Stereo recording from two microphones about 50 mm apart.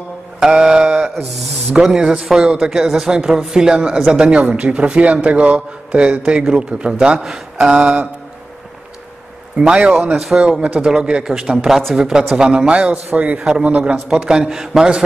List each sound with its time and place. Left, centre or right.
0.4 s mantra: centre
1.7 s speech: centre
9.6 s a man's voice: right
10.1 s speech: centre
10.6 s a man's voice: right
13.4 s speech: centre
13.7 s a man's voice: right
13.9 s speech: centre